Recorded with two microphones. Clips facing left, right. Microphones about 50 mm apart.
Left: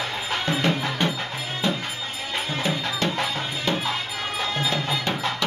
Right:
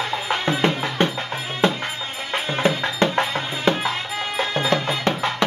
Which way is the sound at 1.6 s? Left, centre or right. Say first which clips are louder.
Right 6 dB; right.